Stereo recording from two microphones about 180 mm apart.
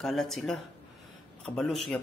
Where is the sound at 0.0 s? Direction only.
Centre (ahead or behind).